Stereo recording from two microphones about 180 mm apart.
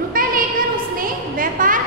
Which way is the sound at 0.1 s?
50° right (ahead or behind).